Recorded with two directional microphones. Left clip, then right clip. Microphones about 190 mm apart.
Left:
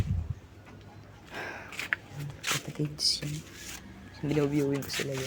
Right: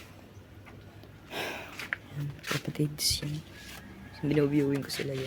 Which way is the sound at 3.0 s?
15° right (ahead or behind).